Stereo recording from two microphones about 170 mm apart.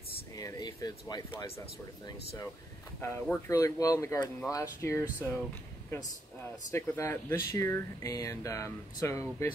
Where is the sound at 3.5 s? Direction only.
20° left (ahead or behind).